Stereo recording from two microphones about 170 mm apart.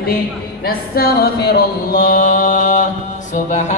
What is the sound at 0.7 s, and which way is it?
Mantra, 65° left (ahead or behind).